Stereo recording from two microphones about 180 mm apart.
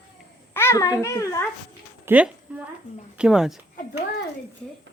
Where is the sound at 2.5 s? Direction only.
5° right (ahead or behind).